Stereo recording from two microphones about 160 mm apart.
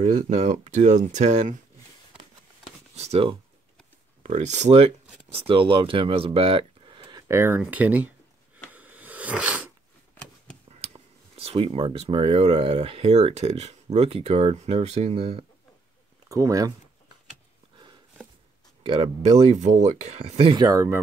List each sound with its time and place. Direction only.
0.0 s speech: 45° right (ahead or behind)
3.0 s speech: 40° right (ahead or behind)
7.2 s speech: 15° right (ahead or behind)
8.7 s a sound: 10° right (ahead or behind)
11.3 s speech: 40° right (ahead or behind)
16.3 s speech: 20° right (ahead or behind)
18.8 s speech: 35° right (ahead or behind)
20.6 s speech: 20° right (ahead or behind)